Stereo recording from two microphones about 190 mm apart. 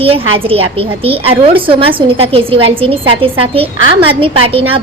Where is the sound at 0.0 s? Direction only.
30° right (ahead or behind).